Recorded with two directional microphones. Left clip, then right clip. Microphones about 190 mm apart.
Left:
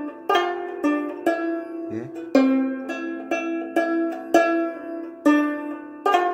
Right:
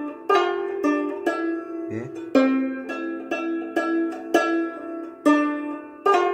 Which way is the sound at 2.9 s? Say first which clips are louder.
Left 1 dB; 50° left (ahead or behind).